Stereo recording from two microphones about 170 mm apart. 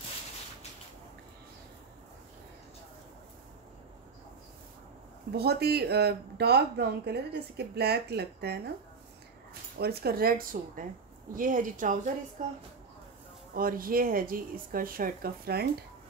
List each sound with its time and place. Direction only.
5.3 s a woman's voice: 70° right (ahead or behind); by 12.5 s 50° right (ahead or behind)
13.6 s speech: 60° right (ahead or behind)